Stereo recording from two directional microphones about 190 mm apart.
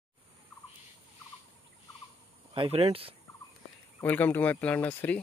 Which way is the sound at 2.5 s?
30° right (ahead or behind).